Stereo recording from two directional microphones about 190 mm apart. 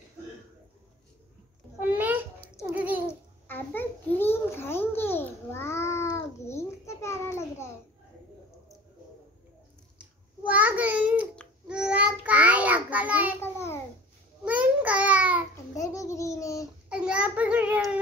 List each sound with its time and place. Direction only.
1.8 s a sound: 10° right (ahead or behind)
2.7 s babbling: 10° right (ahead or behind)
3.1 s a sound: 10° left (ahead or behind)
9.9 s a sound: 5° right (ahead or behind)
11.3 s child singing: 5° right (ahead or behind)
13.4 s babbling: 10° left (ahead or behind)
14.4 s babbling: 5° right (ahead or behind)
15.5 s babbling: 15° left (ahead or behind)
16.9 s child singing: 5° right (ahead or behind)